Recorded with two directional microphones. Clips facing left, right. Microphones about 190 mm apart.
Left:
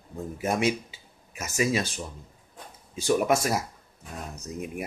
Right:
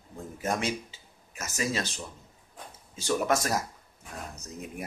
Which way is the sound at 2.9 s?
10° left (ahead or behind).